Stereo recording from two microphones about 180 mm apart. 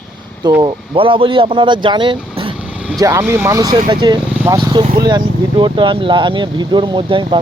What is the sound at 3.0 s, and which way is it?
Speech, 15° right (ahead or behind).